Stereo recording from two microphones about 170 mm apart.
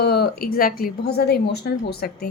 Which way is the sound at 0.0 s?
65° left (ahead or behind).